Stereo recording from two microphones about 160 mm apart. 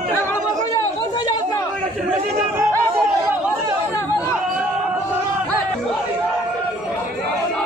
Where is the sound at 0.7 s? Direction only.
25° left (ahead or behind).